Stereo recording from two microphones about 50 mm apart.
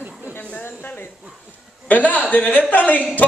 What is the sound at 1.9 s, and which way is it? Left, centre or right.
A man's voice, left.